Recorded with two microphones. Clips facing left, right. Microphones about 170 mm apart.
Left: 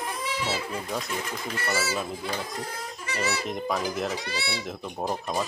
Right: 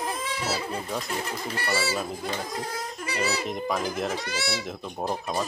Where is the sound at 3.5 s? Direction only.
Centre (ahead or behind).